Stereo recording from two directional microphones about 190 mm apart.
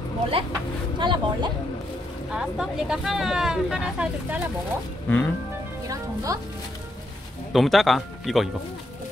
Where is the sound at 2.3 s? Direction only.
5° right (ahead or behind).